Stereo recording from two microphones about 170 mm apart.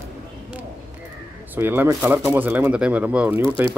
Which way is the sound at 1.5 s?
10° right (ahead or behind).